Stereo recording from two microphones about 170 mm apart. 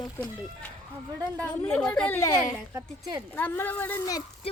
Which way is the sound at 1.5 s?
5° left (ahead or behind).